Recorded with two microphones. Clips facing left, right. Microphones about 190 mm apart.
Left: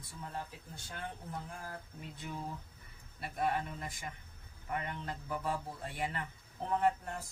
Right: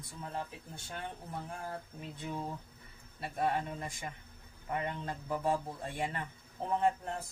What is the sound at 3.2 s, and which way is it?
A man's voice, 25° right (ahead or behind).